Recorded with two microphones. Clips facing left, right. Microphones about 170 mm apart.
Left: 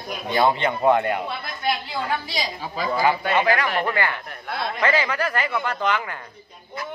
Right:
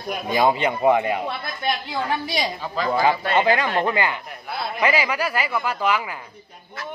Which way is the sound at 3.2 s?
25° right (ahead or behind).